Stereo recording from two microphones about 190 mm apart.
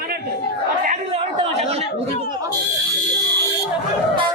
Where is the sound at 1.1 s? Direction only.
30° right (ahead or behind).